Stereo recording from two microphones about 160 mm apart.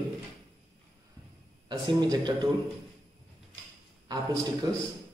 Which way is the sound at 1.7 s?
25° right (ahead or behind).